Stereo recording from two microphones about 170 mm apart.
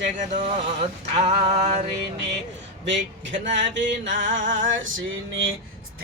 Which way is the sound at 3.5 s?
90° right.